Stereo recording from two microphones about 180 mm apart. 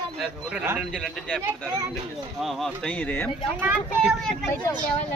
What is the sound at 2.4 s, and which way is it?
Speech, 5° left (ahead or behind).